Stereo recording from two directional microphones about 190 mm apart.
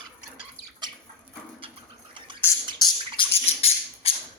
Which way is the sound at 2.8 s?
30° left (ahead or behind).